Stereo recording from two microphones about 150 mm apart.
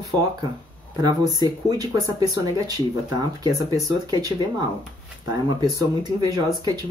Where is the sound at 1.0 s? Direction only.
25° right (ahead or behind).